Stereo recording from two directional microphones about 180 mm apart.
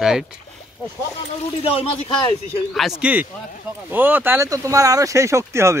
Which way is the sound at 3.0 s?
10° right (ahead or behind).